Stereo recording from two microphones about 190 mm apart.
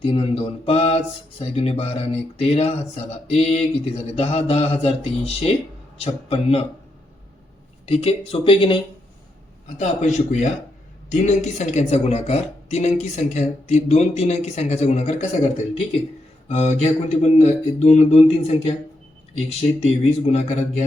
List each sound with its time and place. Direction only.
0.0 s a man's voice: 30° left (ahead or behind)
7.9 s speech: 30° left (ahead or behind)
9.7 s a man's voice: 35° left (ahead or behind)
19.8 s a man's voice: 35° left (ahead or behind)